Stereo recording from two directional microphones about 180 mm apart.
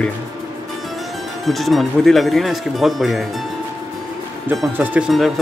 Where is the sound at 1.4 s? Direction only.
Centre (ahead or behind).